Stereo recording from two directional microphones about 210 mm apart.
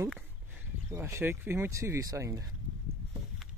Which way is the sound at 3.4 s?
Centre (ahead or behind).